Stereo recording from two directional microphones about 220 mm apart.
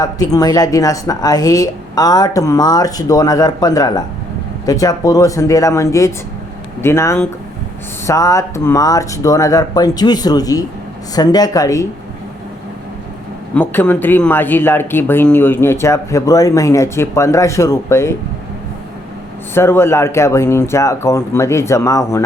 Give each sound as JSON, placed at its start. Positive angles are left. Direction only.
{"t": 0.0, "sound": "speech", "side_deg": 15}
{"t": 13.5, "sound": "speech", "side_deg": 10}
{"t": 19.5, "sound": "speech", "side_deg": 10}